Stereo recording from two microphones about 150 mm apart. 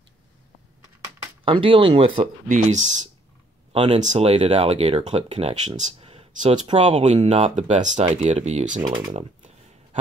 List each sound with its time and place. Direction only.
1.4 s speech: 35° right (ahead or behind)
2.4 s speech: 55° right (ahead or behind)
8.8 s speech: 30° right (ahead or behind)